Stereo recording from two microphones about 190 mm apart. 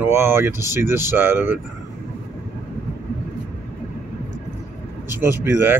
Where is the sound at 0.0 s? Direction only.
10° right (ahead or behind).